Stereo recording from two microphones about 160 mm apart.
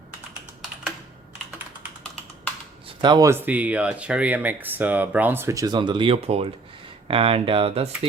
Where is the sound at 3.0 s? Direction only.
25° right (ahead or behind).